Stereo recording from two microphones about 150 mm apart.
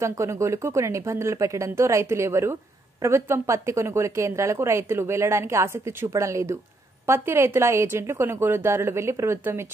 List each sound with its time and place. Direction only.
0.0 s a woman's voice: 20° right (ahead or behind)